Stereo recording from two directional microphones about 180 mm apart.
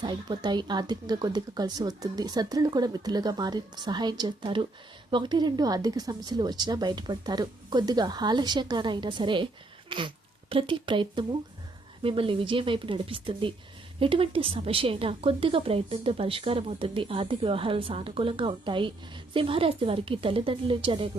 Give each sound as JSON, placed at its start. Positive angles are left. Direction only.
{"t": 0.0, "sound": "a woman's voice", "side_deg": -25}